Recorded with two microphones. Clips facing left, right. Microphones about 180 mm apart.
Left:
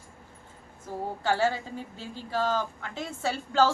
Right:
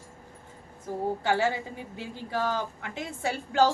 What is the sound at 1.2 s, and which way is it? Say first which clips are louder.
Speech: left 2 dB; 20° right (ahead or behind).